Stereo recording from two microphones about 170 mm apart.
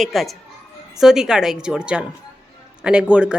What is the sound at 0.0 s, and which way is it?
A woman's voice, centre (ahead or behind).